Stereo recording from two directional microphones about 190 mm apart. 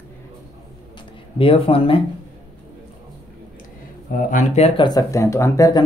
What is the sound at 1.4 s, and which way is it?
Speech, 30° left (ahead or behind).